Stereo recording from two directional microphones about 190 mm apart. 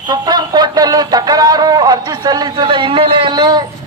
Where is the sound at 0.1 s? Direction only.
20° right (ahead or behind).